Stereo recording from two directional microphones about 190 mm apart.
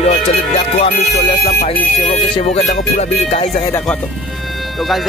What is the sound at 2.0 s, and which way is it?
Music, 35° left (ahead or behind).